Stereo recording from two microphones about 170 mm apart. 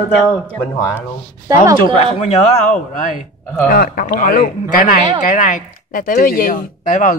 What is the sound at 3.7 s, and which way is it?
Speech, 60° left (ahead or behind).